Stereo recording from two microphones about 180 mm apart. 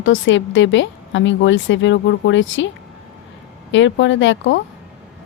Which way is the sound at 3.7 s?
90° left.